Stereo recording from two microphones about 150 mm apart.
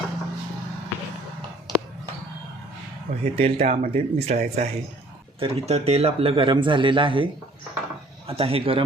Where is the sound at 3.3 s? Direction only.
40° right (ahead or behind).